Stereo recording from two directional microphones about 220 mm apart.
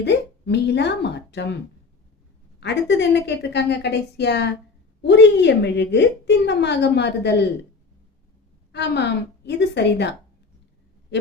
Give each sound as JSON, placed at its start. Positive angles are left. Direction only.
{"t": 0.0, "sound": "a woman's voice", "side_deg": 50}
{"t": 2.6, "sound": "a woman's voice", "side_deg": 50}
{"t": 8.7, "sound": "a woman's voice", "side_deg": 50}